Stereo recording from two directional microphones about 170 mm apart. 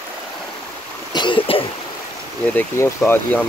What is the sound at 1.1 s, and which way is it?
Cough, 30° left (ahead or behind).